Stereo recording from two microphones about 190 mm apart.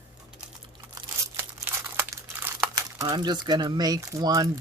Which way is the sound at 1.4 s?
10° right (ahead or behind).